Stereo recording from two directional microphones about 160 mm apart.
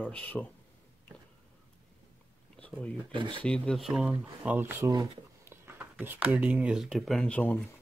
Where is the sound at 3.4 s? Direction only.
5° left (ahead or behind).